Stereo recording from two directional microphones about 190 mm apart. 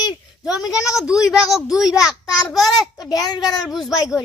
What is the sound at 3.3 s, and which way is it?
Speech, 20° left (ahead or behind).